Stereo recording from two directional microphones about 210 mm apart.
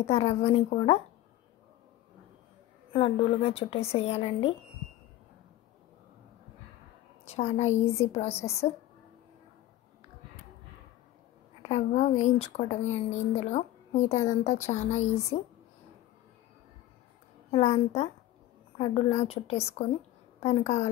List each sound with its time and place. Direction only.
0.0 s a woman's voice: 30° left (ahead or behind)
2.9 s a woman's voice: 25° left (ahead or behind)
7.2 s a woman's voice: 30° left (ahead or behind)
11.7 s a woman's voice: 30° left (ahead or behind)
17.5 s a woman's voice: 30° left (ahead or behind)